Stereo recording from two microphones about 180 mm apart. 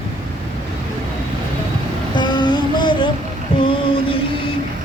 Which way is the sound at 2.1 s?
25° left (ahead or behind).